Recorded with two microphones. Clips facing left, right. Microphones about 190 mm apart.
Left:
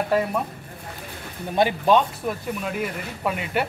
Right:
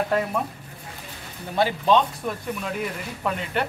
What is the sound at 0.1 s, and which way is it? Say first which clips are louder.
Speech: left 3 dB; 5° left (ahead or behind).